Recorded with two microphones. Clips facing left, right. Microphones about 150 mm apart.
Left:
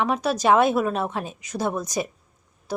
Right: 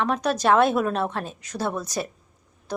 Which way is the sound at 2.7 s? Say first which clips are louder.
Left 1 dB; 10° left (ahead or behind).